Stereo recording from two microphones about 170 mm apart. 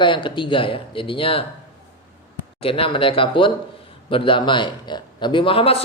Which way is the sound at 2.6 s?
35° left (ahead or behind).